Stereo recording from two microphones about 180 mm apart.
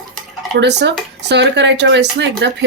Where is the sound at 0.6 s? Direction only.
70° right (ahead or behind).